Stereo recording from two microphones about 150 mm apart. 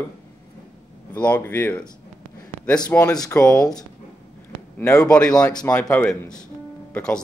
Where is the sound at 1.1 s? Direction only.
10° left (ahead or behind).